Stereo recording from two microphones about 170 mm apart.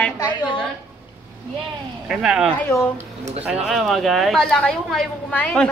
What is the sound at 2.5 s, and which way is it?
Speech, 10° left (ahead or behind).